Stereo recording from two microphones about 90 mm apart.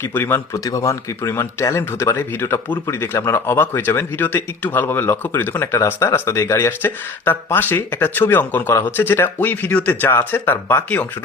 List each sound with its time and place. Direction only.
0.0 s speech: 25° left (ahead or behind)
0.5 s speech: 35° left (ahead or behind); by 11.0 s 20° left (ahead or behind)